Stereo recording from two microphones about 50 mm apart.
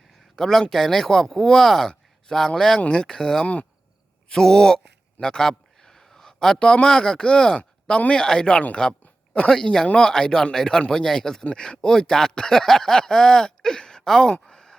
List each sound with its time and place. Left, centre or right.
0.3 s speech: centre
1.9 s a sound: centre
2.6 s speech: centre
3.4 s speech: left
4.3 s a man's voice: centre
14.4 s a sound: centre